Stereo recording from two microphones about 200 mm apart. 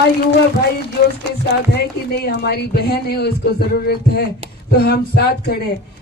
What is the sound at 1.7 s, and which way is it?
Speech, 55° left (ahead or behind).